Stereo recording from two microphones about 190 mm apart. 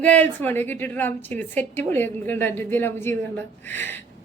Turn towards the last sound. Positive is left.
turn(degrees=10)  # may be behind; listen again after turning